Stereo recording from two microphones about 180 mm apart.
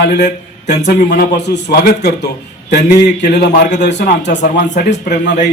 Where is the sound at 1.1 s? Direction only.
70° left (ahead or behind).